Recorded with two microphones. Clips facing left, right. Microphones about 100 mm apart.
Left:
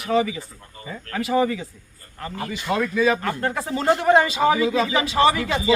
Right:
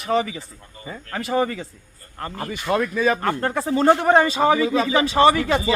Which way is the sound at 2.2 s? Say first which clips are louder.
Right 1 dB; 40° right (ahead or behind).